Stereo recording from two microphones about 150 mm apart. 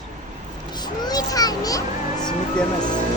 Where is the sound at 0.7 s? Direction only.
25° left (ahead or behind).